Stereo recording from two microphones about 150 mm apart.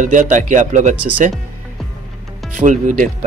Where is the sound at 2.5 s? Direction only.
60° right (ahead or behind).